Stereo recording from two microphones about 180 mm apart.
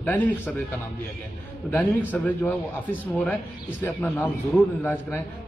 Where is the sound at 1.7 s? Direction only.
10° left (ahead or behind).